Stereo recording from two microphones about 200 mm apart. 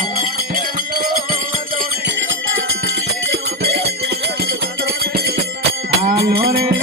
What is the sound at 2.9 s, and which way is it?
Music, 55° right (ahead or behind).